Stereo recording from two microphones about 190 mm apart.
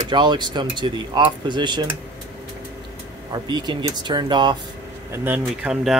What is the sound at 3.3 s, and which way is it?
Speech, 25° right (ahead or behind).